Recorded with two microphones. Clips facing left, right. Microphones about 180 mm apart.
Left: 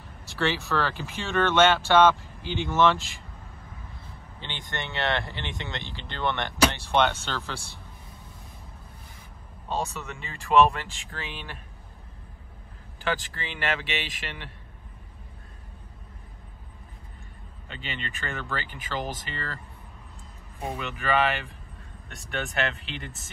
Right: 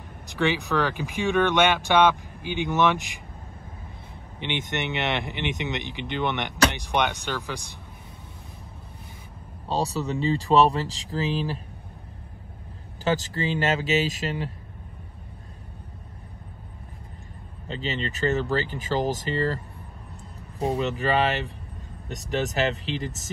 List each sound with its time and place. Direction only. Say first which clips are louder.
0.3 s speech: right 3 dB; 15° right (ahead or behind)
4.4 s speech: right 7 dB; 20° right (ahead or behind)
9.7 s speech: right 5 dB; 35° right (ahead or behind)
13.0 s speech: right 6 dB; 40° right (ahead or behind)
17.6 s speech: right 8 dB; 35° right (ahead or behind)